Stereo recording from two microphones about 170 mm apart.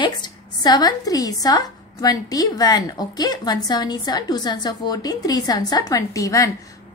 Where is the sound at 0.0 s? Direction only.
25° left (ahead or behind).